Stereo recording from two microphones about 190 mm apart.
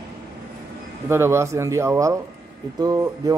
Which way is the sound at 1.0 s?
15° right (ahead or behind).